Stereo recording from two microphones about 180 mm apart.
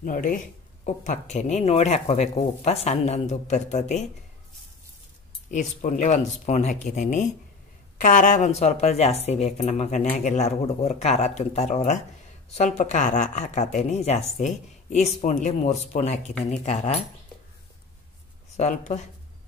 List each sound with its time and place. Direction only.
0.0 s speech: 50° left (ahead or behind)
5.5 s speech: 45° left (ahead or behind)
18.6 s speech: 40° left (ahead or behind)